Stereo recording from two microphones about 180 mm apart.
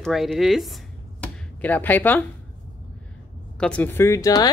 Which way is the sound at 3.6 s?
5° left (ahead or behind).